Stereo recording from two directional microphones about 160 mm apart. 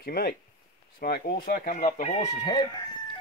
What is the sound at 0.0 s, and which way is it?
Speech, 70° left (ahead or behind).